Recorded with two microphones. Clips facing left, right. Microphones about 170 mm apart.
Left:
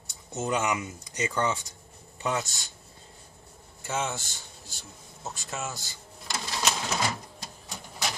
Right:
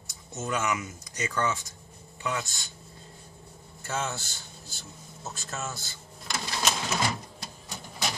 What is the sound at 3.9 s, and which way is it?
Speech, 20° left (ahead or behind).